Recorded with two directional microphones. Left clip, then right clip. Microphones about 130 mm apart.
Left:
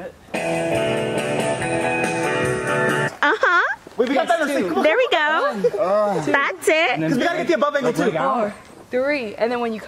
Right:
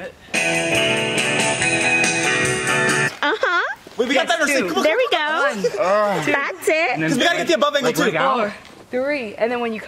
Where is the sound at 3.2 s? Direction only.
15° left (ahead or behind).